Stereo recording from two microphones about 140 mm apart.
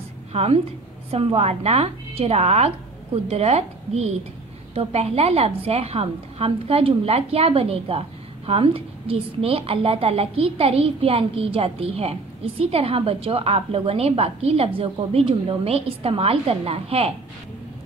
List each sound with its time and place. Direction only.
0.3 s a woman's voice: 45° right (ahead or behind)